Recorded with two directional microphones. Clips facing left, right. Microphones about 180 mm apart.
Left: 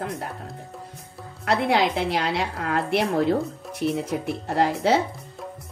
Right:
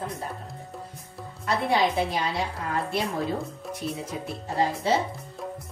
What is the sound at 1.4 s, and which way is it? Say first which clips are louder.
A woman's voice: left 3 dB; 80° left.